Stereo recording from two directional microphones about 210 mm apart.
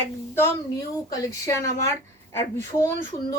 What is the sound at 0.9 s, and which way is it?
Speech, 15° left (ahead or behind).